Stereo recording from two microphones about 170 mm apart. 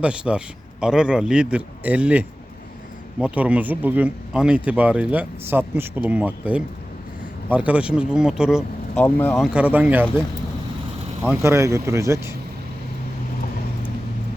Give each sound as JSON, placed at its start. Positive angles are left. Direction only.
{"t": 0.0, "sound": "speech", "side_deg": -5}
{"t": 9.0, "sound": "speech", "side_deg": 10}
{"t": 9.4, "sound": "speech", "side_deg": -5}
{"t": 11.2, "sound": "speech", "side_deg": -15}